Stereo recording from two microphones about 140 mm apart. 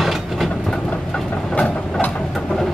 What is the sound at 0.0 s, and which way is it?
Vehicle, centre (ahead or behind).